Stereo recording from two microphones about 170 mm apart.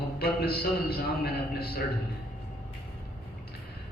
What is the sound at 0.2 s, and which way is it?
A man's voice, 65° left (ahead or behind).